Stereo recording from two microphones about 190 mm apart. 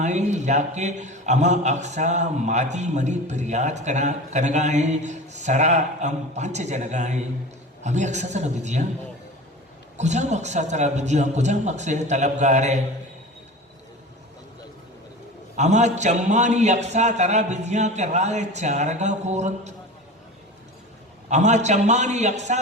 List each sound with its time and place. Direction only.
0.0 s a man's voice: 40° right (ahead or behind)
10.0 s a man's voice: 35° right (ahead or behind)
15.5 s a man's voice: 35° right (ahead or behind)
21.2 s a man's voice: 40° right (ahead or behind)